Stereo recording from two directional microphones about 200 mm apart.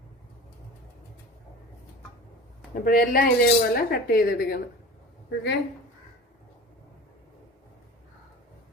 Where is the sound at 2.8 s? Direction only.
45° left (ahead or behind).